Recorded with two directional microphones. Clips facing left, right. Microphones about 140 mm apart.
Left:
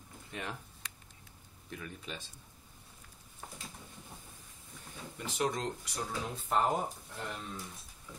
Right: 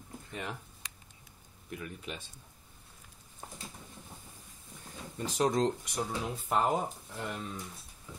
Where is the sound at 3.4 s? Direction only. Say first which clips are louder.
Right 1 dB; 30° right (ahead or behind).